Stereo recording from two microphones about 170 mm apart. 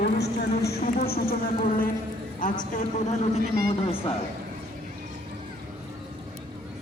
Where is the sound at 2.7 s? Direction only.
40° left (ahead or behind).